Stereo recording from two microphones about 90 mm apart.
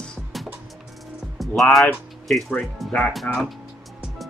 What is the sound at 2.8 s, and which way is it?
Speech, 5° left (ahead or behind).